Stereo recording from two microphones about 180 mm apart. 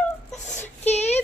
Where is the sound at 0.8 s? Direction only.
35° left (ahead or behind).